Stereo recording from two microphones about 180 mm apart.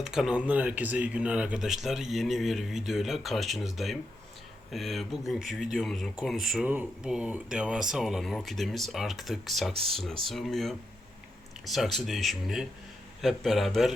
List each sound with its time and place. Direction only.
0.0 s speech: 5° right (ahead or behind)
9.7 s speech: 30° right (ahead or behind)
10.2 s speech: centre (ahead or behind)